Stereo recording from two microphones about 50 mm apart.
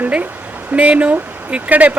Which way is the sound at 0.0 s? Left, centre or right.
Right.